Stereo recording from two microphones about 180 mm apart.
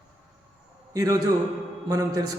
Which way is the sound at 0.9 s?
20° right (ahead or behind).